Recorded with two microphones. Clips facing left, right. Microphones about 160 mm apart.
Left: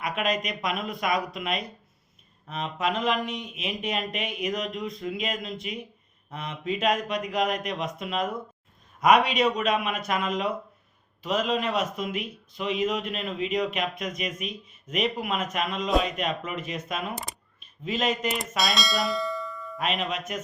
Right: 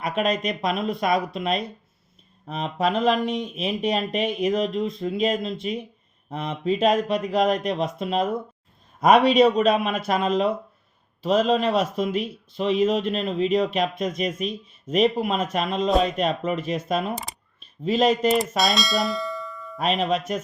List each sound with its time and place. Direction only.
0.0 s speech: 30° right (ahead or behind)
18.3 s bell: centre (ahead or behind)
19.8 s speech: 30° right (ahead or behind)